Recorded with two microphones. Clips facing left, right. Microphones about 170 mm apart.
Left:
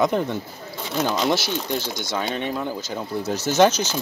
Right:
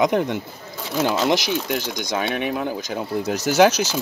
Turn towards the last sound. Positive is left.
turn(degrees=-10)  # may be behind; listen again after turning